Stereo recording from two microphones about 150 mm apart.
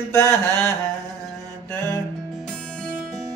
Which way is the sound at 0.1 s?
20° left (ahead or behind).